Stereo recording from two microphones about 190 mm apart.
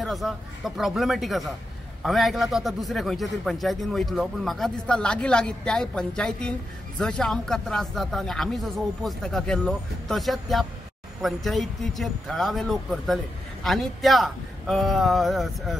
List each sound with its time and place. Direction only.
0.0 s a man's voice: centre (ahead or behind)